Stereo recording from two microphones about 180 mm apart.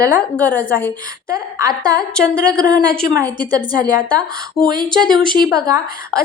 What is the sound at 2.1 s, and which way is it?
Speech, 5° left (ahead or behind).